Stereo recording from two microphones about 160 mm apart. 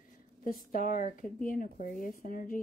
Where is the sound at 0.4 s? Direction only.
60° left (ahead or behind).